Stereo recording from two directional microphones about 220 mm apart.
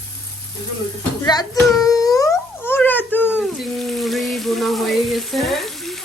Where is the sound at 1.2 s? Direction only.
15° left (ahead or behind).